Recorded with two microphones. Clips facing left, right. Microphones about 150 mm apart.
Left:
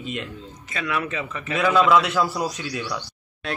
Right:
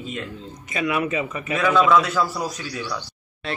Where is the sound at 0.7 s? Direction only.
15° right (ahead or behind).